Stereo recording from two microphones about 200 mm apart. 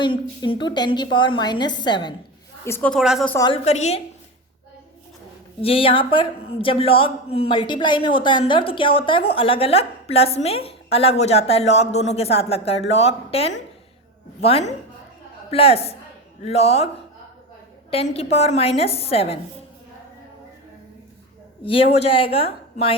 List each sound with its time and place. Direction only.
0.0 s a man's voice: 25° left (ahead or behind)
2.6 s a woman's voice: 10° left (ahead or behind)
3.0 s a woman's voice: 5° right (ahead or behind)
3.2 s a woman's voice: 15° left (ahead or behind)
3.5 s speech: 30° left (ahead or behind)
5.6 s a man's voice: 25° left (ahead or behind)
17.9 s a man's voice: 30° left (ahead or behind)
21.6 s a man's voice: 25° left (ahead or behind)